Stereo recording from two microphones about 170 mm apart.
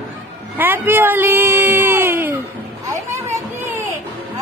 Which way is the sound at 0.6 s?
10° right (ahead or behind).